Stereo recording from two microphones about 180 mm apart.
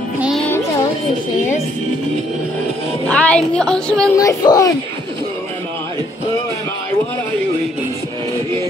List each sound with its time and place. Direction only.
0.2 s music: centre (ahead or behind)
3.1 s a woman's voice: 5° left (ahead or behind)
4.2 s speech: 20° left (ahead or behind)